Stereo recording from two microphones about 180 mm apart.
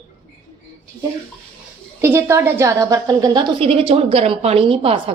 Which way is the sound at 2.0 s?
15° right (ahead or behind).